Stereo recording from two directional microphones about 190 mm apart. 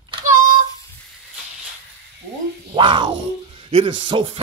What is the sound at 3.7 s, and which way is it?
Speech, 30° right (ahead or behind).